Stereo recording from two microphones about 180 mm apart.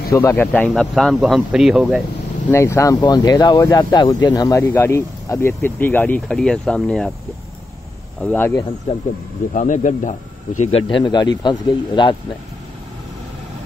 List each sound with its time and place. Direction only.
0.1 s speech: 10° left (ahead or behind)
2.5 s speech: 15° left (ahead or behind)
8.2 s speech: 5° left (ahead or behind)
8.9 s speech: 35° left (ahead or behind)
9.5 s speech: 45° left (ahead or behind)
10.7 s speech: 25° left (ahead or behind)